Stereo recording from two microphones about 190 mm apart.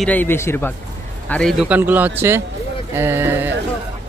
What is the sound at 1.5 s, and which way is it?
Speech, 5° right (ahead or behind).